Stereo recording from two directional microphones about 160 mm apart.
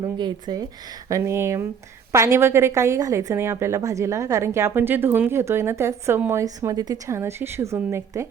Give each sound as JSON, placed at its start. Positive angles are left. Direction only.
{"t": 0.0, "sound": "a woman's voice", "side_deg": -25}